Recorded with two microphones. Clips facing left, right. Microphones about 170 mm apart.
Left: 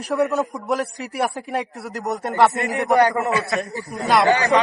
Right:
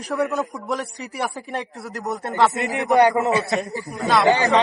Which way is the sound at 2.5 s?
20° right (ahead or behind).